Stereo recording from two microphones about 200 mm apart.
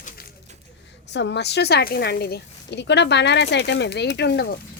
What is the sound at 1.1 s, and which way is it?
Speech, 60° left (ahead or behind).